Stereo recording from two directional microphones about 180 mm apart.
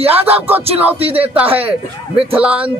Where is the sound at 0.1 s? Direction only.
10° right (ahead or behind).